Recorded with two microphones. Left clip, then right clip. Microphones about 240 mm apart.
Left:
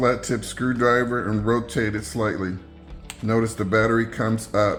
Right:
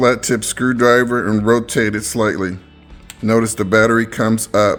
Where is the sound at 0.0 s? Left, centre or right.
Right.